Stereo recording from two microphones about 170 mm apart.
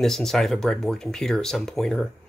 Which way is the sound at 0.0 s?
5° left (ahead or behind).